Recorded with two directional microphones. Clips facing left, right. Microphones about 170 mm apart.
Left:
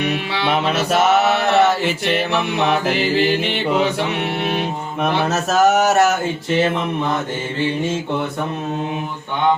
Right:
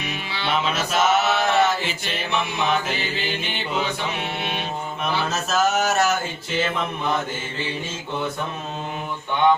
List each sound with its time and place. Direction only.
0.0 s mantra: 65° left (ahead or behind)
5.3 s speech: 65° left (ahead or behind)